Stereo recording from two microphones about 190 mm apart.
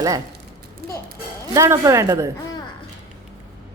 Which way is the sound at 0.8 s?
50° right (ahead or behind).